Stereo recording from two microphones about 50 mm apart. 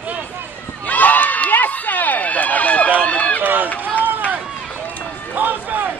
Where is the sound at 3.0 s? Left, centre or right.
Left.